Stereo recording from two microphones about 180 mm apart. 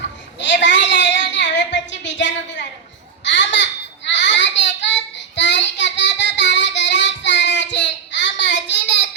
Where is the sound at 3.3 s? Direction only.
80° left.